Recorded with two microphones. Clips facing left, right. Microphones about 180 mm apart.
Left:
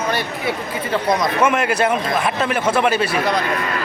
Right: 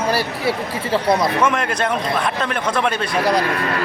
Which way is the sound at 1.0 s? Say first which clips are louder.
Right 1 dB; 30° right (ahead or behind).